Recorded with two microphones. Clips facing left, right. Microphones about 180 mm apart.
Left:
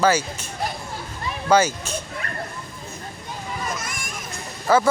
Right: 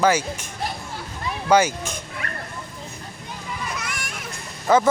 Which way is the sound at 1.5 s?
15° right (ahead or behind).